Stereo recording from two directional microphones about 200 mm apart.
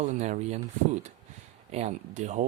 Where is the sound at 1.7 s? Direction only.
35° right (ahead or behind).